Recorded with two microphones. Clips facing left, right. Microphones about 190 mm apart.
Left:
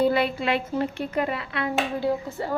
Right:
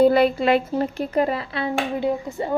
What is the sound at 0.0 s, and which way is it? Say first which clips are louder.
A woman's voice: right 6 dB; 45° right (ahead or behind).